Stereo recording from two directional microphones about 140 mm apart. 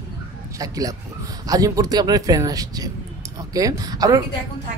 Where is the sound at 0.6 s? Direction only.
25° right (ahead or behind).